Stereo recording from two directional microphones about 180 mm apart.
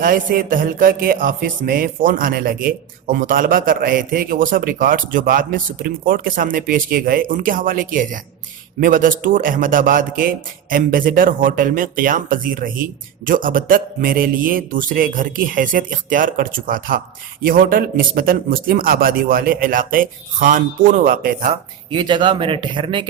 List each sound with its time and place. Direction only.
0.0 s music: 50° right (ahead or behind)
21.5 s speech: 25° right (ahead or behind)